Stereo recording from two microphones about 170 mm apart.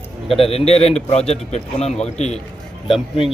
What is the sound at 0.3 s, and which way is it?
A man's voice, 35° left (ahead or behind).